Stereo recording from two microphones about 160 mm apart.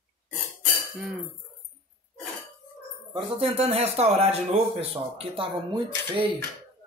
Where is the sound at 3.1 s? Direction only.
40° right (ahead or behind).